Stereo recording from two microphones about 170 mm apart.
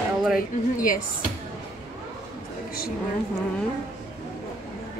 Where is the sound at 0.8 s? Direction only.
55° left (ahead or behind).